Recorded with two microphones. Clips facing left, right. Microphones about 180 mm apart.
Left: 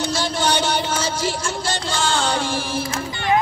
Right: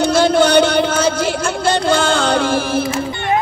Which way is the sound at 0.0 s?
55° right (ahead or behind).